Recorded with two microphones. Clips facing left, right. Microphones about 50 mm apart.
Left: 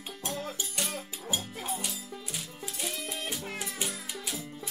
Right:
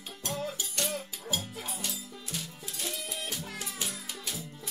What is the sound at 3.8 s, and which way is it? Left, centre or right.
Music, left.